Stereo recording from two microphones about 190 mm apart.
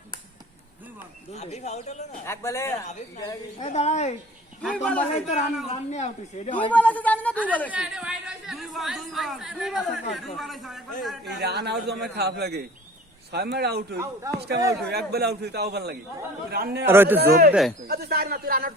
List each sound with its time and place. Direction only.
1.3 s speech: 35° left (ahead or behind)
2.2 s a woman's voice: 15° left (ahead or behind)
3.6 s speech: 35° left (ahead or behind)
4.7 s a man's voice: 5° left (ahead or behind)
5.7 s speech: 35° left (ahead or behind)
6.6 s a woman's voice: 5° left (ahead or behind)
7.7 s a man's voice: 5° right (ahead or behind)
11.3 s a man's voice: 60° right (ahead or behind)
16.8 s a man's voice: 10° right (ahead or behind)
17.2 s a man's voice: 55° right (ahead or behind)
17.5 s a man's voice: centre (ahead or behind)
17.8 s speech: 55° right (ahead or behind)